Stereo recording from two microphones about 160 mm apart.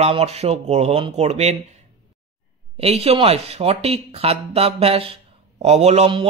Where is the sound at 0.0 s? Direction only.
40° right (ahead or behind).